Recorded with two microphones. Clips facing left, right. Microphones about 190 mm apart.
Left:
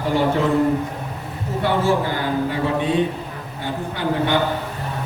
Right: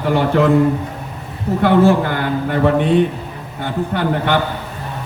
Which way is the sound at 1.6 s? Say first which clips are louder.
Right 7 dB; 60° right (ahead or behind).